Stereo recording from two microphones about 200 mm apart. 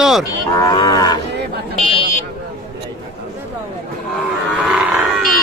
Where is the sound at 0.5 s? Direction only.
20° left (ahead or behind).